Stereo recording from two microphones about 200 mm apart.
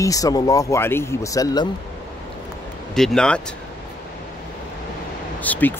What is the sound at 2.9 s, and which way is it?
Speech, 5° left (ahead or behind).